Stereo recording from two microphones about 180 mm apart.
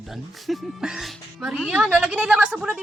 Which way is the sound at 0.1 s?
Centre (ahead or behind).